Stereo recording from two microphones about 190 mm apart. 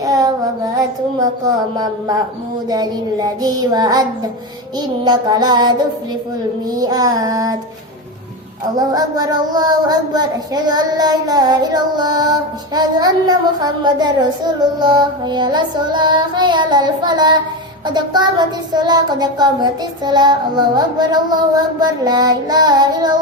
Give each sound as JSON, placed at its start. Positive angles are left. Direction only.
{"t": 0.0, "sound": "speech", "side_deg": -20}
{"t": 5.0, "sound": "speech", "side_deg": -20}
{"t": 8.8, "sound": "speech", "side_deg": -20}